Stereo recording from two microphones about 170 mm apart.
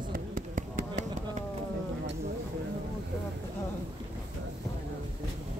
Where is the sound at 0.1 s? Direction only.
55° right (ahead or behind).